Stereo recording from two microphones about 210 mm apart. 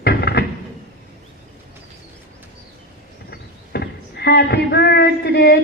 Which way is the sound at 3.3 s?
50° left (ahead or behind).